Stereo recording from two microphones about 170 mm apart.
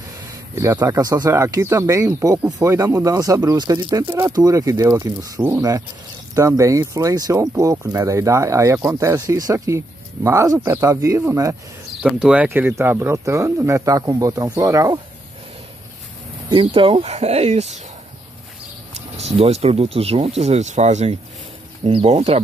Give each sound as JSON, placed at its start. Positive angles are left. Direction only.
{"t": 0.6, "sound": "speech", "side_deg": -20}
{"t": 12.0, "sound": "speech", "side_deg": -5}
{"t": 16.4, "sound": "speech", "side_deg": -30}
{"t": 19.1, "sound": "speech", "side_deg": -40}